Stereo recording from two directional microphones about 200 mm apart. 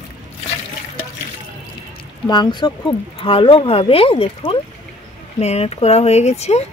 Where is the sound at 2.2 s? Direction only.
20° left (ahead or behind).